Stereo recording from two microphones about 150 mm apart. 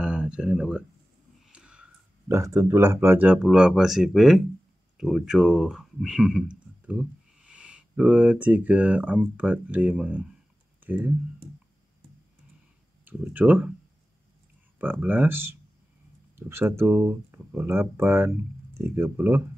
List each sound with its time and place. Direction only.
0.0 s a sound: 5° right (ahead or behind)
2.3 s speech: 20° right (ahead or behind)
13.0 s speech: 10° right (ahead or behind)
14.8 s speech: 10° right (ahead or behind)